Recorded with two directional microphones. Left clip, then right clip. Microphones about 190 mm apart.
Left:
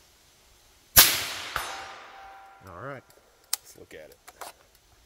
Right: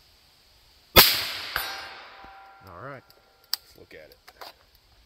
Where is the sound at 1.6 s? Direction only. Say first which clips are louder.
Right 2 dB; 45° right (ahead or behind).